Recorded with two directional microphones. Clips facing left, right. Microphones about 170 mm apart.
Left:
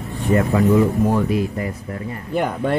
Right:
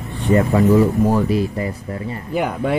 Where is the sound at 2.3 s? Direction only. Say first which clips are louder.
Even; 10° right (ahead or behind).